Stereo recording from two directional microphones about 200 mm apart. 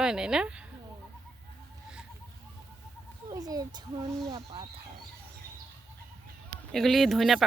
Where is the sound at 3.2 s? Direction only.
20° right (ahead or behind).